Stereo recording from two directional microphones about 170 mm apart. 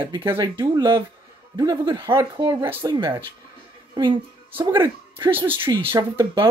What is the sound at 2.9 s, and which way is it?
Speech, 25° right (ahead or behind).